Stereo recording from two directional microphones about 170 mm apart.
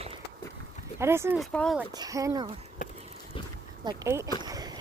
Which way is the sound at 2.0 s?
20° right (ahead or behind).